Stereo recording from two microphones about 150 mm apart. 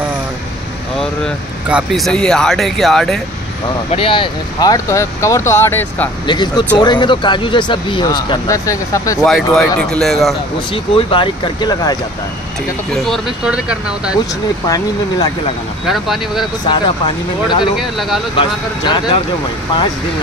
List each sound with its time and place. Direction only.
1.7 s speech: 5° right (ahead or behind)
3.9 s speech: 35° left (ahead or behind); by 6.0 s 15° left (ahead or behind)
6.2 s speech: 30° left (ahead or behind)
9.2 s speech: centre (ahead or behind)
10.7 s speech: 35° left (ahead or behind)
12.9 s speech: 5° left (ahead or behind)
15.9 s speech: centre (ahead or behind)
16.6 s speech: 30° left (ahead or behind)
17.7 s speech: centre (ahead or behind)
18.3 s speech: 30° left (ahead or behind)